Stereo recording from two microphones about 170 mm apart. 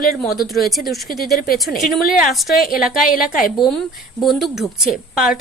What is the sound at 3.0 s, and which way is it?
Speech, 55° left (ahead or behind).